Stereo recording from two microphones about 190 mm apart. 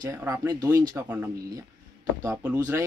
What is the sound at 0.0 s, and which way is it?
Speech, 15° right (ahead or behind).